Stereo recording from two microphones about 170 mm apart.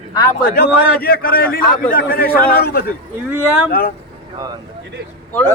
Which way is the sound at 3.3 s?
10° right (ahead or behind).